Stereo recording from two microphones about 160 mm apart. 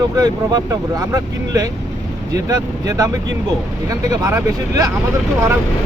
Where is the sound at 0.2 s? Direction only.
20° right (ahead or behind).